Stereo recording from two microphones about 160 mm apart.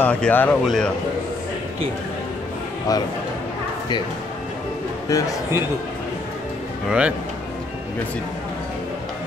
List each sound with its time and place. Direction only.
0.0 s a man's voice: 10° left (ahead or behind)
2.9 s a man's voice: 20° left (ahead or behind)
5.1 s a man's voice: 20° left (ahead or behind)
6.9 s speech: 10° right (ahead or behind)